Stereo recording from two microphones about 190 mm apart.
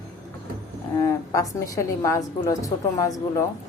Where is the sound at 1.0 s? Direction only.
15° left (ahead or behind).